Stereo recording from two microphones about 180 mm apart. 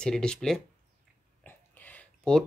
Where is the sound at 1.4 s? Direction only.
10° left (ahead or behind).